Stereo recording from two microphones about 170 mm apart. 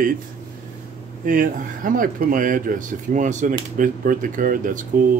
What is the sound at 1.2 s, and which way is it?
Speech, 55° right (ahead or behind).